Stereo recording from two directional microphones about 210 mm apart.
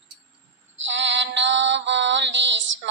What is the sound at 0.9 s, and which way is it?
Female singing, 60° right (ahead or behind).